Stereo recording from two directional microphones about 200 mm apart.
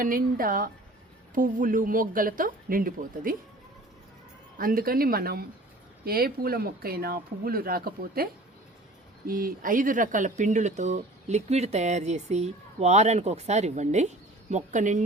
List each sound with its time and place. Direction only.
0.0 s speech: 45° right (ahead or behind)
4.5 s speech: 45° right (ahead or behind)